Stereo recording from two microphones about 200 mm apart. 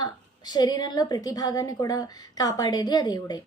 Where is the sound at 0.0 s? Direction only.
20° left (ahead or behind).